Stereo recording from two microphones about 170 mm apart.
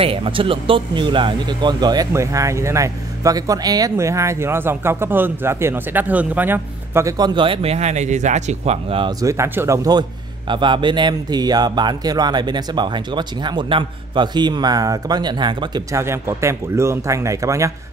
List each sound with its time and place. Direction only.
0.0 s speech: 30° right (ahead or behind)
9.2 s speech: 15° right (ahead or behind)